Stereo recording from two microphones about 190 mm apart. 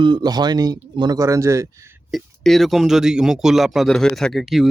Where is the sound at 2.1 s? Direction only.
Centre (ahead or behind).